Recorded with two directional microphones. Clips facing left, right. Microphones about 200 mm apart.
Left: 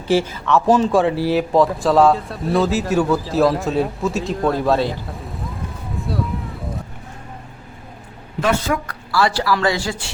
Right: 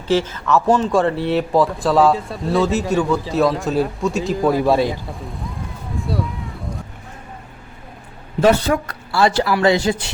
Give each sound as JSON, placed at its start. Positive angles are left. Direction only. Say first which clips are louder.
{"t": 0.1, "sound": "speech", "louder": "even", "side_deg": 10}
{"t": 6.0, "sound": "a sound", "louder": "even", "side_deg": 0}
{"t": 8.4, "sound": "speech", "louder": "right 5 dB", "side_deg": -35}